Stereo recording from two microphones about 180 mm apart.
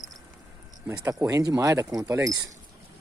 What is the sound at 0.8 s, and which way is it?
Speech, 15° right (ahead or behind).